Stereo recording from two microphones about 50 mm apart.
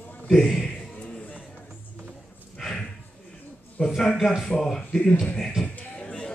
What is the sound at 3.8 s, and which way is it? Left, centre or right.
Speech, left.